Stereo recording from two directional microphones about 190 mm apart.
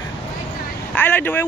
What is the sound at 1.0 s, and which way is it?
Speech, 10° left (ahead or behind).